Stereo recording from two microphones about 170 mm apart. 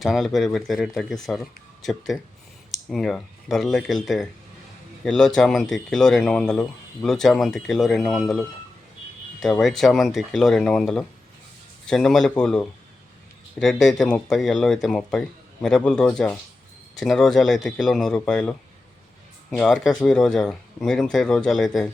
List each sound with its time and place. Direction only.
0.0 s speech: centre (ahead or behind)